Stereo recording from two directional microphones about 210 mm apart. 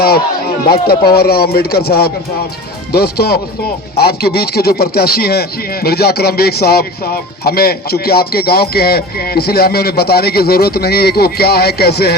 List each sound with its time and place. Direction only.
0.7 s speech: 45° left (ahead or behind)